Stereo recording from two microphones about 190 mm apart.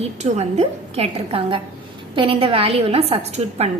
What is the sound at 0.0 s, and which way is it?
A woman's voice, 35° right (ahead or behind).